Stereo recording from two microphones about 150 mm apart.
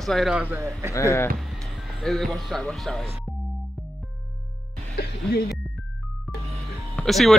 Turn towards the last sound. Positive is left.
turn(degrees=0)  # may be behind; listen again after turning